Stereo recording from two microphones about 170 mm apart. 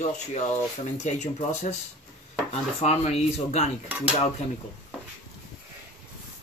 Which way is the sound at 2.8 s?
40° left (ahead or behind).